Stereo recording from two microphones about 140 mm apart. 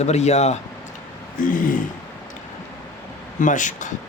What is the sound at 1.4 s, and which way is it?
Speech, 70° left (ahead or behind).